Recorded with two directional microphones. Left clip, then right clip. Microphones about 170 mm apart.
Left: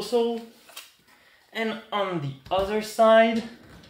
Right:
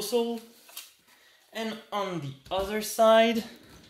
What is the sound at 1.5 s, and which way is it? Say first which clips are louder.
Speech: left 5 dB; 30° right (ahead or behind).